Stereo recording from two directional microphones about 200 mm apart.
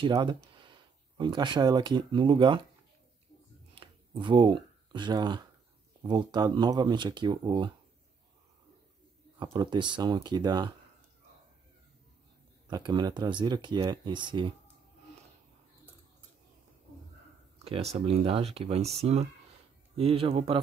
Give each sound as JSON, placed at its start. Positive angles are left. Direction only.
{"t": 0.0, "sound": "speech", "side_deg": -25}
{"t": 3.7, "sound": "a sound", "side_deg": -25}
{"t": 6.0, "sound": "speech", "side_deg": -20}
{"t": 9.4, "sound": "speech", "side_deg": -20}
{"t": 12.6, "sound": "speech", "side_deg": -20}
{"t": 17.9, "sound": "speech", "side_deg": -30}